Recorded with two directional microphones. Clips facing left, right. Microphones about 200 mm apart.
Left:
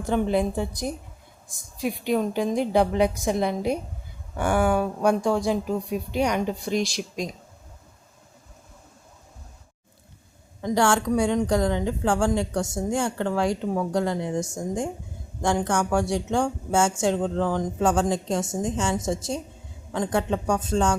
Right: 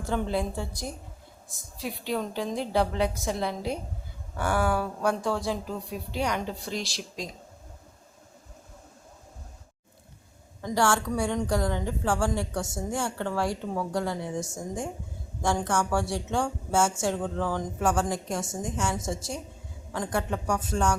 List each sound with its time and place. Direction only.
0.0 s a woman's voice: 20° left (ahead or behind)
10.6 s a woman's voice: 15° left (ahead or behind)
14.3 s a woman's voice: 5° right (ahead or behind)
15.4 s a woman's voice: 15° left (ahead or behind)